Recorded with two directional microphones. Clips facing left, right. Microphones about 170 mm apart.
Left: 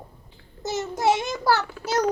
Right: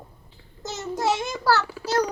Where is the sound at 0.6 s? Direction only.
20° left (ahead or behind).